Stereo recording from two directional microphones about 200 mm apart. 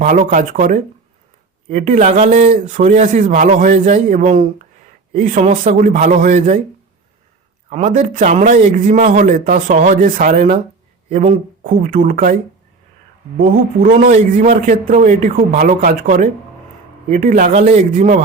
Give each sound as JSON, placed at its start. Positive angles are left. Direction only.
{"t": 0.0, "sound": "speech", "side_deg": -40}
{"t": 7.7, "sound": "speech", "side_deg": -35}
{"t": 13.5, "sound": "speech", "side_deg": -45}